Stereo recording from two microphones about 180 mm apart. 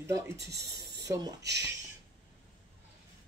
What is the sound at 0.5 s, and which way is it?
Speech, 70° right (ahead or behind).